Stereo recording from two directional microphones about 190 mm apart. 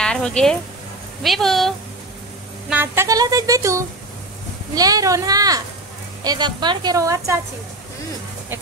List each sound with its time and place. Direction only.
0.0 s speech: 5° left (ahead or behind)
2.7 s a woman's voice: 10° right (ahead or behind)